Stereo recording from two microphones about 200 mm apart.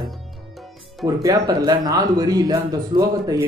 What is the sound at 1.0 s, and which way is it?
Speech, 15° right (ahead or behind).